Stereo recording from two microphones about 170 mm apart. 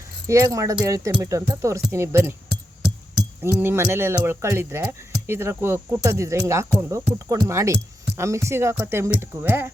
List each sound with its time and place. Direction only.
0.3 s speech: 15° right (ahead or behind)
3.4 s speech: 15° right (ahead or behind)